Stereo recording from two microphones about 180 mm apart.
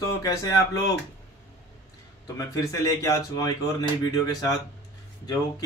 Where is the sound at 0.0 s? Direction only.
20° left (ahead or behind).